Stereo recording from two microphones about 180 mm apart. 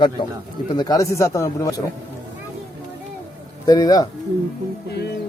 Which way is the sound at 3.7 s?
20° left (ahead or behind).